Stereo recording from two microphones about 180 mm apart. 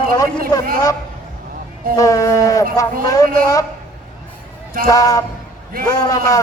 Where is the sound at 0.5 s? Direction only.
20° left (ahead or behind).